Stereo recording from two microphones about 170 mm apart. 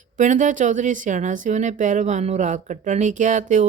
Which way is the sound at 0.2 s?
50° right (ahead or behind).